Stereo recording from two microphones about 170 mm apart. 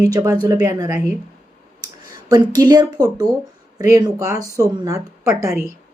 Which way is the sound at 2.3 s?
25° right (ahead or behind).